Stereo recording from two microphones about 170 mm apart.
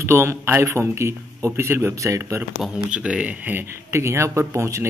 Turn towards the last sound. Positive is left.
turn(degrees=-15)  # may be behind; listen again after turning